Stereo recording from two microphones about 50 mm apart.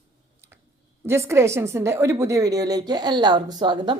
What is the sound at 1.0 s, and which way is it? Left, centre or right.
A woman's voice, right.